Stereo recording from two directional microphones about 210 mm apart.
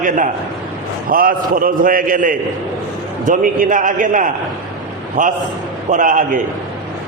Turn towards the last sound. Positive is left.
turn(degrees=-40)  # may be behind; listen again after turning